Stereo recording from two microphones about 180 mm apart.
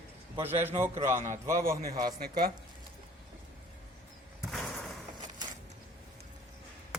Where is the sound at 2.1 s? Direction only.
55° right (ahead or behind).